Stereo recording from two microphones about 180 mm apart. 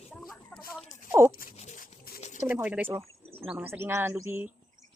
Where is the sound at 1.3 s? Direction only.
50° left (ahead or behind).